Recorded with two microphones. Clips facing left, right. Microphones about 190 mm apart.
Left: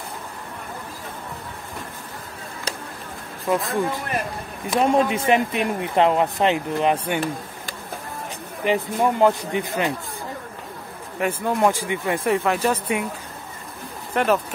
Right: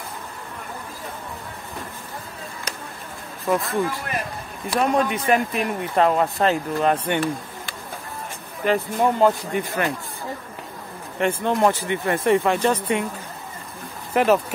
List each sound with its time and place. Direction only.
3.4 s speech: 20° left (ahead or behind)
8.6 s speech: 15° left (ahead or behind)
11.1 s speech: 5° left (ahead or behind)
14.1 s speech: centre (ahead or behind)